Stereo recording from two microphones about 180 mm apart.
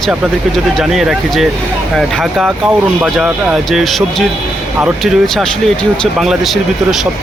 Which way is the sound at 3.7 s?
Centre (ahead or behind).